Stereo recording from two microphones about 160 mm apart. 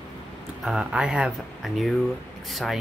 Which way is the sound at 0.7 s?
5° right (ahead or behind).